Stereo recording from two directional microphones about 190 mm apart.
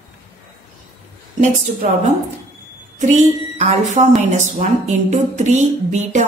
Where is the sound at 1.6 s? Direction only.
40° right (ahead or behind).